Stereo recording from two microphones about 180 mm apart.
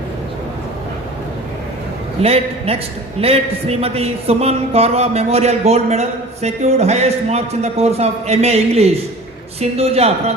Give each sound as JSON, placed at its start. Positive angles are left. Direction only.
{"t": 2.2, "sound": "a man's voice", "side_deg": -35}